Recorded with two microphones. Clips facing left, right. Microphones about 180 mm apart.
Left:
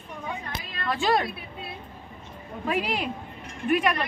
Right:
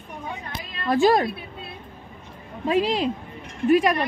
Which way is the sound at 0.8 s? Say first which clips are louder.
Right 6 dB; 40° right (ahead or behind).